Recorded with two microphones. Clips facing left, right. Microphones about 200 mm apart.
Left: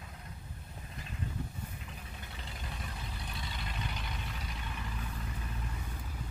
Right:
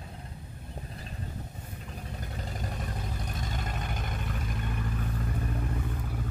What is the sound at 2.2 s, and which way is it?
Vehicle, 45° right (ahead or behind).